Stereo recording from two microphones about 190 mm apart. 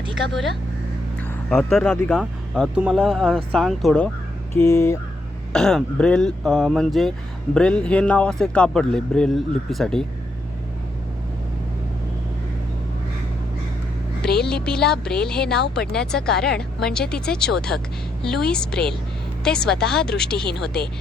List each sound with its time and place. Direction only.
1.2 s speech: 5° left (ahead or behind)
4.5 s a sound: 15° left (ahead or behind)
5.5 s speech: 5° left (ahead or behind)
14.4 s speech: 5° left (ahead or behind)
15.5 s speech: 60° left (ahead or behind)
15.9 s speech: 5° left (ahead or behind)